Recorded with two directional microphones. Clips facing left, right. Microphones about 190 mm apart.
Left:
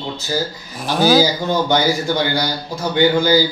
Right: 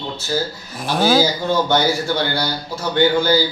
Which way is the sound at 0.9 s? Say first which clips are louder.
Left 2 dB; centre (ahead or behind).